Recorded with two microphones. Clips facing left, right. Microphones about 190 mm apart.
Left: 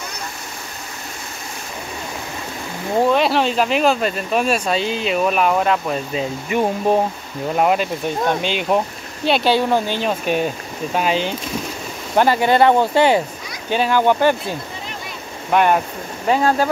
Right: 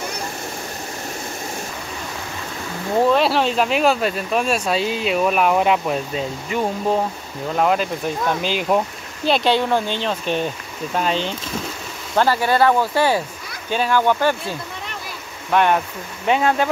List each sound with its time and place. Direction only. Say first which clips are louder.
3.1 s speech: left 1 dB; centre (ahead or behind)
6.5 s speech: left 3 dB; 15° left (ahead or behind)
12.2 s speech: left 2 dB; 20° left (ahead or behind)
15.5 s speech: left 1 dB; 10° left (ahead or behind)